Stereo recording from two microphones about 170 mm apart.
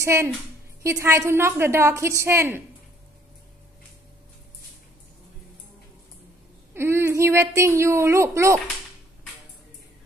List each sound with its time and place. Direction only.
0.0 s a woman's voice: 15° right (ahead or behind)
6.7 s speech: 15° right (ahead or behind)